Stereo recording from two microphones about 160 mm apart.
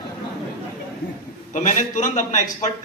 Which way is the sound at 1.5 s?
55° left (ahead or behind).